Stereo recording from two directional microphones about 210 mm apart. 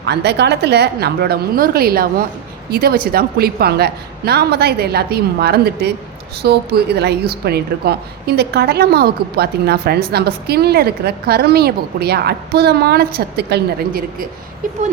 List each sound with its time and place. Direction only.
0.0 s a woman's voice: 50° right (ahead or behind)